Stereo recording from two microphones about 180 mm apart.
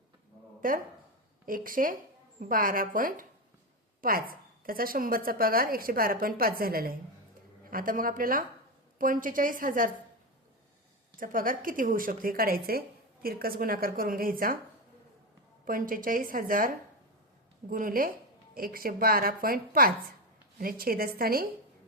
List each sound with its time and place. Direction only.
0.6 s a woman's voice: 50° right (ahead or behind)
11.2 s a woman's voice: 50° right (ahead or behind)
15.6 s a woman's voice: 50° right (ahead or behind)